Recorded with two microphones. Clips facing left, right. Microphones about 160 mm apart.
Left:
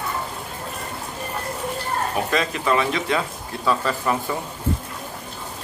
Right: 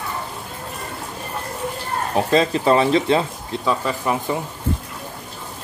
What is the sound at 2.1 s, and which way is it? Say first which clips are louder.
Speech: right 9 dB; 30° right (ahead or behind).